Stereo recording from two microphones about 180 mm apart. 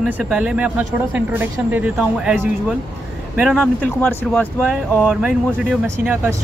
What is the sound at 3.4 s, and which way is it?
Speech, 5° right (ahead or behind).